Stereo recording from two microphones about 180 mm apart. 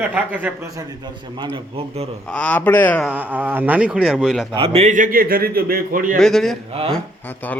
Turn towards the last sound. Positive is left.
turn(degrees=10)  # may be behind; listen again after turning